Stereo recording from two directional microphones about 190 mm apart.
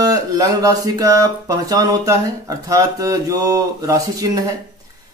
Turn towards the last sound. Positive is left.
turn(degrees=-20)  # may be behind; listen again after turning